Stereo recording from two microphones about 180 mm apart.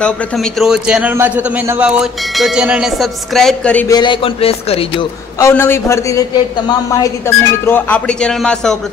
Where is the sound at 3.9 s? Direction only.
25° left (ahead or behind).